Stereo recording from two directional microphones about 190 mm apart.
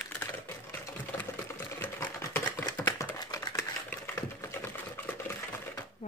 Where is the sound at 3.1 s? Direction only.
20° left (ahead or behind).